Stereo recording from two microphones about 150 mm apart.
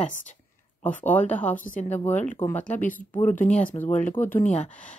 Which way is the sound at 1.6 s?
65° left (ahead or behind).